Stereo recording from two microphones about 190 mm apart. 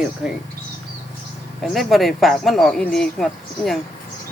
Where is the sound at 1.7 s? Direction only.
Centre (ahead or behind).